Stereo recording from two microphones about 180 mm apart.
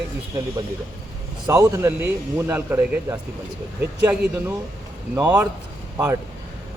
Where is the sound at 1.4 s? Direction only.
15° right (ahead or behind).